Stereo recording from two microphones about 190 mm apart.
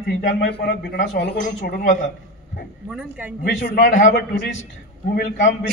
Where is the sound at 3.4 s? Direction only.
50° left (ahead or behind).